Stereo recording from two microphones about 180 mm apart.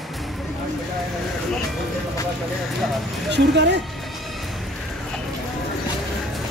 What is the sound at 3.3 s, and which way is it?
Speech, 75° right (ahead or behind).